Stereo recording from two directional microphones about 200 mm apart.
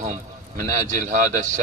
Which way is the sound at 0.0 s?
40° right (ahead or behind).